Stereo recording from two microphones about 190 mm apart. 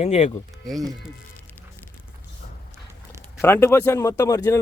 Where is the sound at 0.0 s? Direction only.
35° left (ahead or behind).